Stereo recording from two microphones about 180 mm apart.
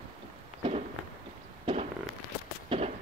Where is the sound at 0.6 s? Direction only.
35° right (ahead or behind).